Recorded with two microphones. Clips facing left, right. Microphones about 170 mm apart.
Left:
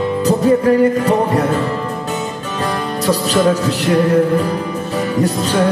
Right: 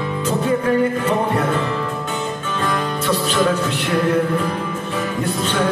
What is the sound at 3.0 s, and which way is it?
Music, 40° left (ahead or behind).